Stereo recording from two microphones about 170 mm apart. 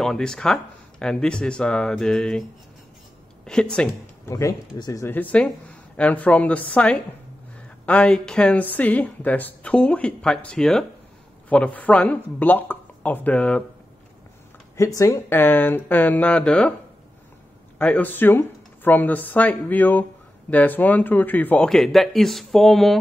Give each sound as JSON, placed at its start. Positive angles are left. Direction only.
{"t": 0.0, "sound": "speech", "side_deg": 5}
{"t": 3.5, "sound": "speech", "side_deg": 5}
{"t": 4.3, "sound": "speech", "side_deg": 15}
{"t": 14.8, "sound": "speech", "side_deg": 20}
{"t": 17.7, "sound": "speech", "side_deg": 10}